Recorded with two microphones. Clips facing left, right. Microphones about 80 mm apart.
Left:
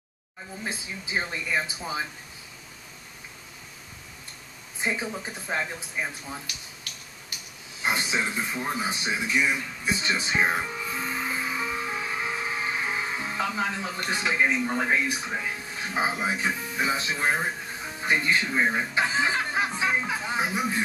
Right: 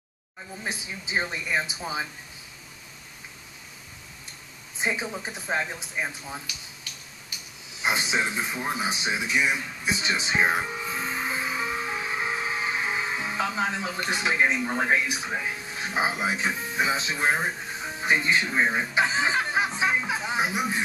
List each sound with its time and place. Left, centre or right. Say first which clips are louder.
0.7 s speech: right 1 dB; centre
4.7 s a woman's voice: right 1 dB; centre
7.8 s a sound: right 1 dB; centre
13.8 s speech: right 1 dB; centre